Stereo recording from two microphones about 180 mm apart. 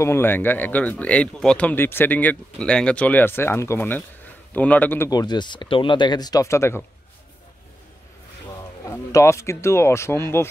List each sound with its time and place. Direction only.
0.0 s speech: 15° left (ahead or behind)
8.8 s speech: 15° left (ahead or behind)